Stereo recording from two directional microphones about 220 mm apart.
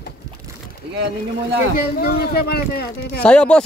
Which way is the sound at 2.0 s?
45° left (ahead or behind).